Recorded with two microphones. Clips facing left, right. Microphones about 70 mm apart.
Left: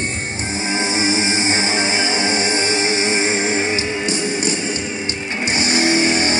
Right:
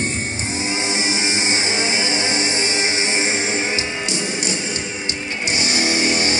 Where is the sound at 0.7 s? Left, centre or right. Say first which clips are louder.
Left 5 dB; left.